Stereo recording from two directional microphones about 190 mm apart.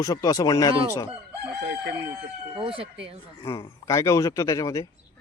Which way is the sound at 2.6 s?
30° right (ahead or behind).